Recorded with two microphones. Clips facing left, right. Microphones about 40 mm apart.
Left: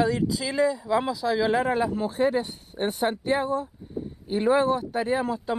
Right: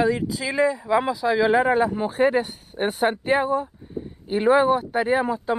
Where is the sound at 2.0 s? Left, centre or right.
Right.